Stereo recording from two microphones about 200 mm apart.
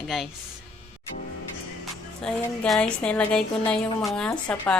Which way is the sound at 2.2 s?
5° left (ahead or behind).